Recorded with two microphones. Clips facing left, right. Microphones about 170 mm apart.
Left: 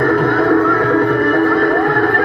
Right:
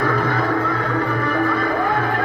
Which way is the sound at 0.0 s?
55° left (ahead or behind).